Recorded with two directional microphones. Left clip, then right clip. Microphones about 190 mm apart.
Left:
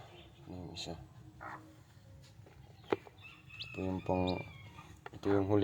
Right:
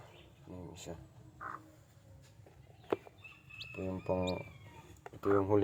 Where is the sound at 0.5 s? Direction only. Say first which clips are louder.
Left 3 dB; centre (ahead or behind).